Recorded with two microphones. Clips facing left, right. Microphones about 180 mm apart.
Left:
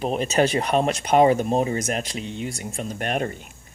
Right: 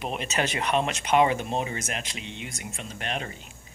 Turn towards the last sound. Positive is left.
turn(degrees=50)  # may be behind; listen again after turning